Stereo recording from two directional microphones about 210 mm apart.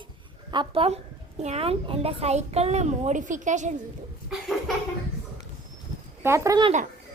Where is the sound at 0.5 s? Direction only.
25° right (ahead or behind).